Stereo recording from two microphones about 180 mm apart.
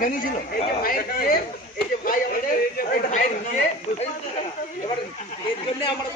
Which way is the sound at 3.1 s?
45° left (ahead or behind).